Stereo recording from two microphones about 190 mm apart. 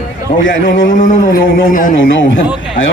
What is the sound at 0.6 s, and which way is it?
Speech, 80° left.